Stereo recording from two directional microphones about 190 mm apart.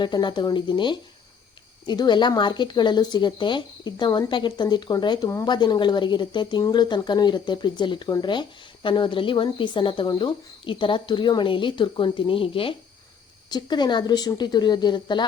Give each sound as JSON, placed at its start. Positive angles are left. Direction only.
{"t": 0.0, "sound": "speech", "side_deg": 25}